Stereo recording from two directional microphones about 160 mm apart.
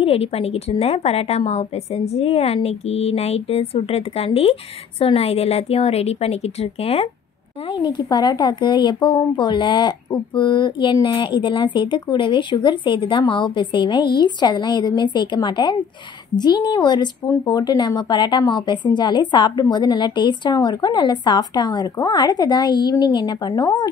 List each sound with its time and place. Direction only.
0.0 s a woman's voice: 40° left (ahead or behind)
7.7 s speech: 25° left (ahead or behind)